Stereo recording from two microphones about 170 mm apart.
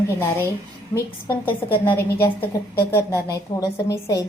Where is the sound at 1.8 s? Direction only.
15° left (ahead or behind).